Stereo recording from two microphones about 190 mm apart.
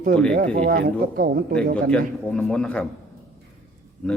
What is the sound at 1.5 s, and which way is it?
A man's voice, 5° left (ahead or behind).